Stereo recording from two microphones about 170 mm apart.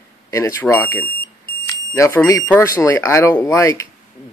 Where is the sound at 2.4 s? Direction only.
15° left (ahead or behind).